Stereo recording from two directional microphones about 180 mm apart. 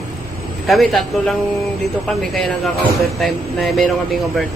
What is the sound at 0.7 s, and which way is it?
Speech, centre (ahead or behind).